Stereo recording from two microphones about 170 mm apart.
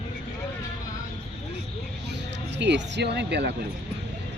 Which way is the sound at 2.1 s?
90° right.